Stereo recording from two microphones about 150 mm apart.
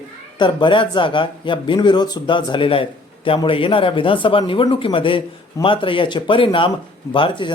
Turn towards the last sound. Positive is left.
turn(degrees=35)  # may be behind; listen again after turning